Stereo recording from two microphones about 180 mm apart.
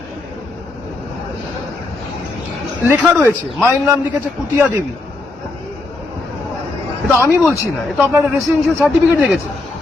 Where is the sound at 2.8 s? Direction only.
5° right (ahead or behind).